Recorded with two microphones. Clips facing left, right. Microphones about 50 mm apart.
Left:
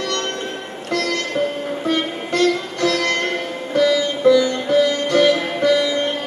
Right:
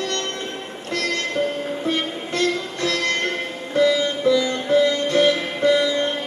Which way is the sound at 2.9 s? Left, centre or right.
Left.